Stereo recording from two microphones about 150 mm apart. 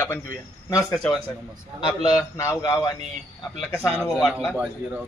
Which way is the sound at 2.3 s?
20° left (ahead or behind).